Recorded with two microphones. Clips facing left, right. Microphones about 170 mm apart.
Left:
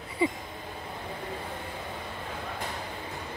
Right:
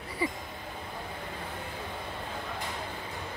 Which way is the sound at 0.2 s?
20° left (ahead or behind).